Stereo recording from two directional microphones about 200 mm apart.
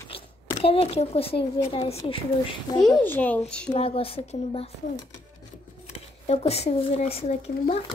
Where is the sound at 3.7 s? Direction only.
30° left (ahead or behind).